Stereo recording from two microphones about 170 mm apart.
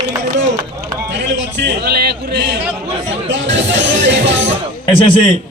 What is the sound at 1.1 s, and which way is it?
Music, 90° right.